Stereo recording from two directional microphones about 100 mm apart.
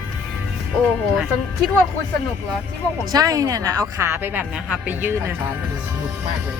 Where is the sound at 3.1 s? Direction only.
40° right (ahead or behind); by 5.3 s 20° right (ahead or behind).